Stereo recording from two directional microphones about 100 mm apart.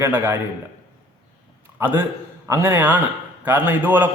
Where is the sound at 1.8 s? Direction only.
20° right (ahead or behind).